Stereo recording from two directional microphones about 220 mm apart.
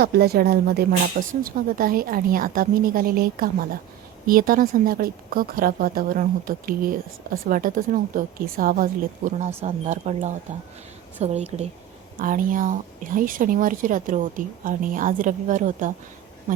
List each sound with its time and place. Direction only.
0.0 s a woman's voice: 45° right (ahead or behind)